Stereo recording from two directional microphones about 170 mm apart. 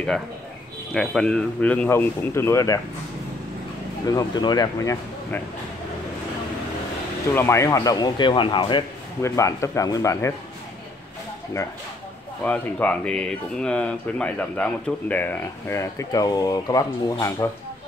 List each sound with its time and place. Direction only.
0.9 s speech: 5° left (ahead or behind)
4.1 s speech: 20° left (ahead or behind)
7.3 s speech: 15° left (ahead or behind)
12.4 s speech: 10° left (ahead or behind)